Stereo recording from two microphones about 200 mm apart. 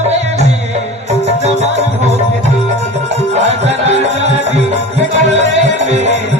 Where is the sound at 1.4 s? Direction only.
35° right (ahead or behind).